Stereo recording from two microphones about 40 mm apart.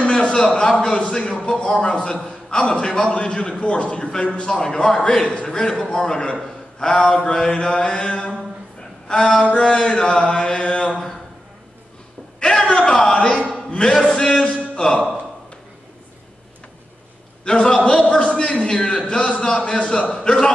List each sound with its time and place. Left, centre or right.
0.1 s a man's voice: left
9.4 s a man's voice: left
12.4 s a sound: left
12.8 s a man's voice: centre
17.5 s a man's voice: centre